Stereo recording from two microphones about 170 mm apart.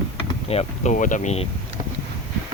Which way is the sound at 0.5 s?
35° left (ahead or behind).